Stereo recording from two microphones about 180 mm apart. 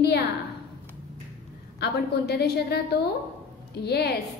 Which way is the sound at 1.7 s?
65° left (ahead or behind).